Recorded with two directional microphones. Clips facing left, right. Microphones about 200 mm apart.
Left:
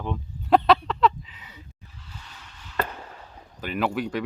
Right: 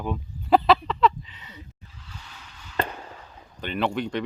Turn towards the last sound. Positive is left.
turn(degrees=5)  # may be behind; listen again after turning